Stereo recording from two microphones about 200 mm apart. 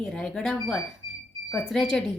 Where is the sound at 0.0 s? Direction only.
5° left (ahead or behind).